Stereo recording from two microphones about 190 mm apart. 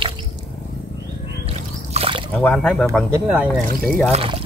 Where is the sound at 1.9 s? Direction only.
30° right (ahead or behind).